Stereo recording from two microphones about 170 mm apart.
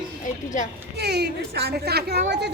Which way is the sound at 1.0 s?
75° right (ahead or behind).